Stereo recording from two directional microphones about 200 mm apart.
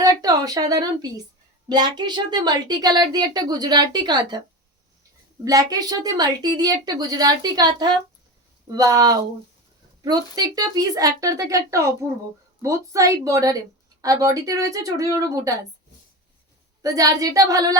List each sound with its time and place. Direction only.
0.0 s a woman's voice: 20° right (ahead or behind)
5.5 s a woman's voice: 20° right (ahead or behind)
16.8 s speech: 20° right (ahead or behind)